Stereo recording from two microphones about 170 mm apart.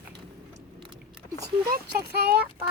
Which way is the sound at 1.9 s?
70° right (ahead or behind).